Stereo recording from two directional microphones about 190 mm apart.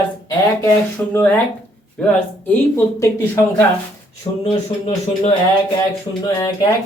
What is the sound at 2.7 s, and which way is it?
Speech, 15° left (ahead or behind).